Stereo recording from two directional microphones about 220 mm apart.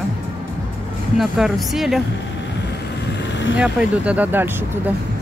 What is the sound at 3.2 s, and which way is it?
Vehicle, 55° left (ahead or behind).